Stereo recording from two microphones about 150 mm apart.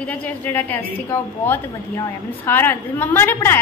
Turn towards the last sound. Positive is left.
turn(degrees=15)  # may be behind; listen again after turning